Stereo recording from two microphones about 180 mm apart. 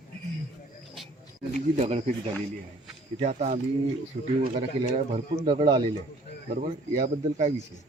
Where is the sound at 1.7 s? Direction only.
35° right (ahead or behind).